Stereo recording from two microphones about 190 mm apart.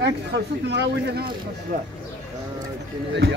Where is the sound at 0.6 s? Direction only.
60° right (ahead or behind).